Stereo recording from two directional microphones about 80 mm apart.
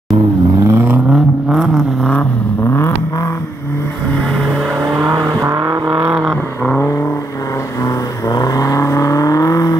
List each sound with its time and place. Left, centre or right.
0.7 s vehicle: right
1.1 s vehicle: centre
5.1 s vehicle: right
5.9 s vehicle: right
7.8 s vehicle: left